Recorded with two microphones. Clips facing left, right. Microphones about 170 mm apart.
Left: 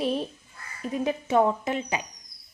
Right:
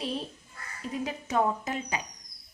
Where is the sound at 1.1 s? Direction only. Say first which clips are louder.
Left 6 dB; 30° left (ahead or behind).